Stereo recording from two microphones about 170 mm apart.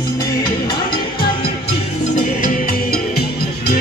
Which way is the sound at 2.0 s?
45° left (ahead or behind).